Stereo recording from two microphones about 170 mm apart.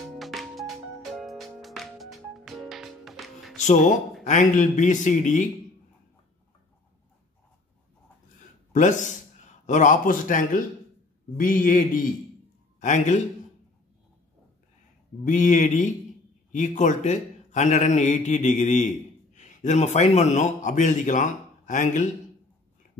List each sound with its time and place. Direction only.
0.2 s music: centre (ahead or behind)
4.3 s a man's voice: 45° left (ahead or behind)
8.7 s a man's voice: 45° left (ahead or behind)
15.2 s a man's voice: 45° left (ahead or behind)